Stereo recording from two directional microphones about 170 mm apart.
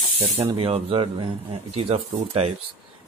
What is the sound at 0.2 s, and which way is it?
Speech, 35° right (ahead or behind).